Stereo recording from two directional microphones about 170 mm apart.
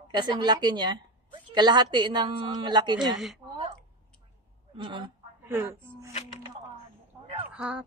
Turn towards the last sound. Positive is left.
turn(degrees=-5)  # may be behind; listen again after turning